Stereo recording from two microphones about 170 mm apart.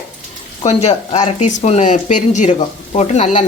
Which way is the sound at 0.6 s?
40° left (ahead or behind).